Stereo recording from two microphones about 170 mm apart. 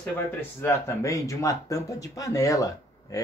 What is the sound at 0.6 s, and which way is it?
Speech, 15° left (ahead or behind).